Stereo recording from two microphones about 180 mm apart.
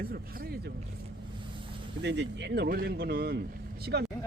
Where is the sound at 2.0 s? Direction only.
75° right (ahead or behind).